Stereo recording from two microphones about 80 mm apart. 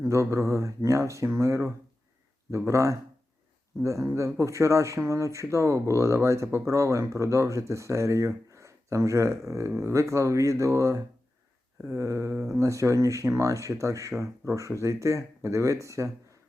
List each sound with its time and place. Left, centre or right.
0.1 s speech: right
8.5 s a sound: right
9.5 s speech: right